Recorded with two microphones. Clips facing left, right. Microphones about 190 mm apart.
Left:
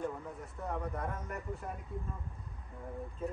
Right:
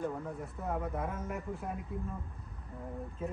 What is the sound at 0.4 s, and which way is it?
A man's voice, centre (ahead or behind).